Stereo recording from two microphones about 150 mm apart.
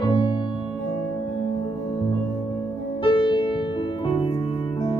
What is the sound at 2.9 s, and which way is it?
Music, 35° left (ahead or behind).